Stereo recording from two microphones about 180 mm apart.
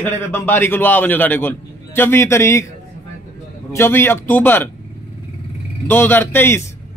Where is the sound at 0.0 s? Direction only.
10° left (ahead or behind).